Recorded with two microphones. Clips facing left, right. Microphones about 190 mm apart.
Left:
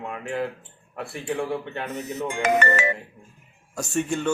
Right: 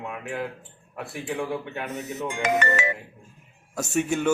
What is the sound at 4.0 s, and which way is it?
Speech, 5° right (ahead or behind).